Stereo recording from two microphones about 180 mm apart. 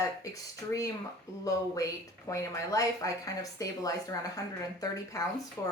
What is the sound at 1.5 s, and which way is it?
A woman's voice, 20° left (ahead or behind).